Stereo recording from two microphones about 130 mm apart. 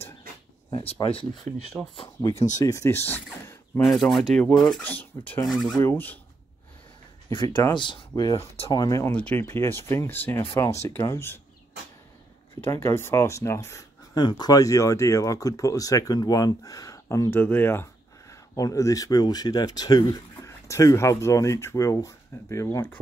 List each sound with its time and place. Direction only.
0.7 s speech: 40° left (ahead or behind)
1.8 s speech: centre (ahead or behind)
2.3 s speech: 65° left (ahead or behind)
2.6 s speech: 25° left (ahead or behind)
3.8 s speech: centre (ahead or behind)
5.5 s speech: centre (ahead or behind)
5.9 s speech: 15° left (ahead or behind)
7.2 s speech: 25° left (ahead or behind)
7.7 s speech: 40° left (ahead or behind)
8.1 s speech: 25° left (ahead or behind)
9.1 s speech: 10° left (ahead or behind)
12.5 s speech: 15° left (ahead or behind)
18.3 s speech: 25° left (ahead or behind)